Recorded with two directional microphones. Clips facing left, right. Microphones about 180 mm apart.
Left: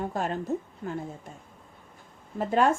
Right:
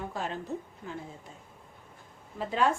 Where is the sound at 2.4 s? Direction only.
50° left (ahead or behind).